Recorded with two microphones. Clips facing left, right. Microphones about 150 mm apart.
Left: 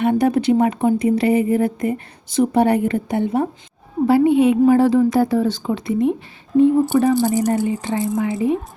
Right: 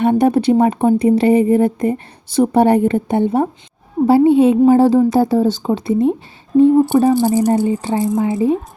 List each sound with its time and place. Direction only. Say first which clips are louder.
0.0 s speech: right 3 dB; 30° right (ahead or behind)